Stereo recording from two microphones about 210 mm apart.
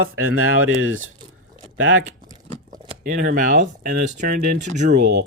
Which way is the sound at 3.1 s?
40° right (ahead or behind).